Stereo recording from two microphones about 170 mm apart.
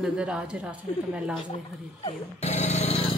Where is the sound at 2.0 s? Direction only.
35° left (ahead or behind).